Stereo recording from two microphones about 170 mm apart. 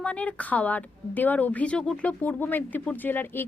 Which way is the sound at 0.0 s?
10° left (ahead or behind).